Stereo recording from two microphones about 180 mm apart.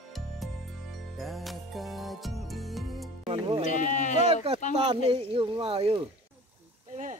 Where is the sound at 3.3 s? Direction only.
30° right (ahead or behind).